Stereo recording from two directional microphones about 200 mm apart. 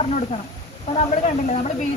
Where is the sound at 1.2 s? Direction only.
35° left (ahead or behind).